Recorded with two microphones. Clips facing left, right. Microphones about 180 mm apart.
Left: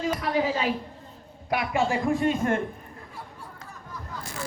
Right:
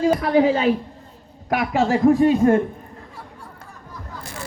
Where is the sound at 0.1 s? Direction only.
40° right (ahead or behind).